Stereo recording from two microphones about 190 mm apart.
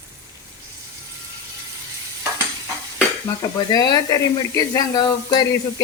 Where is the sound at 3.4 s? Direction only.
20° left (ahead or behind).